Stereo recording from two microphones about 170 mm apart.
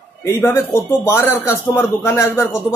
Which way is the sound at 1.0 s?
15° left (ahead or behind).